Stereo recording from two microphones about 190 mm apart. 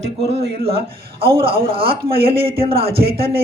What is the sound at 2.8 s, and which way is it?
Speech, 55° right (ahead or behind).